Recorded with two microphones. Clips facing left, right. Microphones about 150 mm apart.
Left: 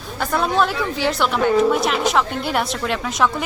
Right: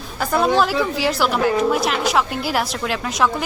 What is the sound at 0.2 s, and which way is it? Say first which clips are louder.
A woman's voice: right 2 dB; centre (ahead or behind).